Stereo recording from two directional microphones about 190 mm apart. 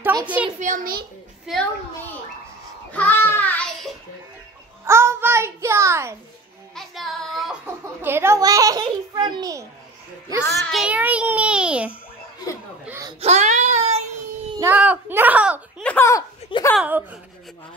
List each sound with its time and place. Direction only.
0.0 s a sound: 20° right (ahead or behind)
0.6 s a child's voice: 45° right (ahead or behind)
1.4 s a child's voice: centre (ahead or behind)
2.9 s a sound: 10° left (ahead or behind)
4.8 s a sound: 15° right (ahead or behind)
6.7 s child singing: centre (ahead or behind)
7.6 s a child's voice: 10° right (ahead or behind)
10.7 s a child's voice: 5° right (ahead or behind)
13.2 s child singing: 35° right (ahead or behind)
14.6 s a child's voice: 10° right (ahead or behind)
15.8 s a sound: 10° left (ahead or behind)
16.7 s a child's voice: 5° right (ahead or behind)